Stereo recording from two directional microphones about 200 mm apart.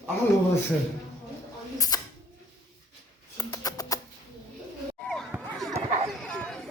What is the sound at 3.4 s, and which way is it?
Music, 20° left (ahead or behind).